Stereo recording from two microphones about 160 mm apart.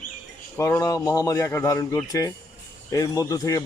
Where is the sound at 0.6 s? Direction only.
20° left (ahead or behind).